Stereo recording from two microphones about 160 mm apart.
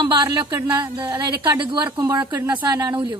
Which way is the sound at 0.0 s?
30° right (ahead or behind).